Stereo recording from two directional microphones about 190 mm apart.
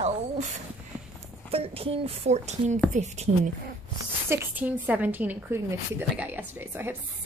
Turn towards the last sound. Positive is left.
turn(degrees=-10)  # may be behind; listen again after turning